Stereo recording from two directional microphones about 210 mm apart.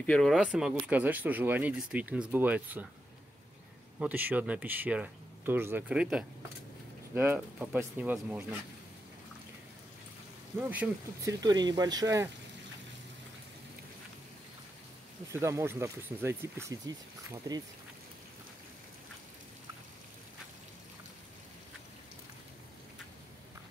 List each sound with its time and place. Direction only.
0.0 s speech: 5° left (ahead or behind)
4.0 s speech: 10° right (ahead or behind)
10.7 s speech: 10° right (ahead or behind)
11.4 s speech: 20° right (ahead or behind)
15.3 s speech: 10° right (ahead or behind)